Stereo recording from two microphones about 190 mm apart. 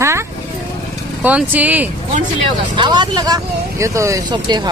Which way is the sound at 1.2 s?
10° right (ahead or behind).